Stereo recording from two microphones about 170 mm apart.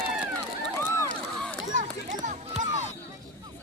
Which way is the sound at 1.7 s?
50° right (ahead or behind).